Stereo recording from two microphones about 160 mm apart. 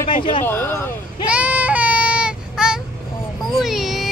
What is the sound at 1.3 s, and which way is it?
Child singing, 10° right (ahead or behind).